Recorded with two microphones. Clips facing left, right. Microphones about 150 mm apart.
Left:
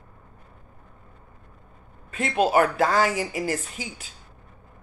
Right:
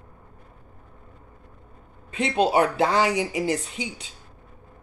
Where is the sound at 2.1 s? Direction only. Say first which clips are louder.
Even; 25° right (ahead or behind).